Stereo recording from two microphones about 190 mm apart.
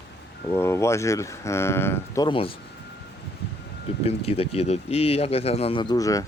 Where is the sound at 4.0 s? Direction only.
30° left (ahead or behind).